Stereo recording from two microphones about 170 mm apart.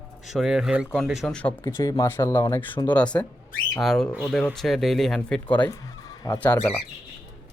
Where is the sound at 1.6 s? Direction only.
20° left (ahead or behind).